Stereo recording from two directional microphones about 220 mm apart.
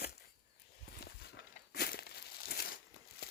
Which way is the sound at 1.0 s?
45° left (ahead or behind).